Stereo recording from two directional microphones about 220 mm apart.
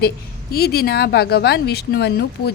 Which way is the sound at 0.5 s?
45° left (ahead or behind).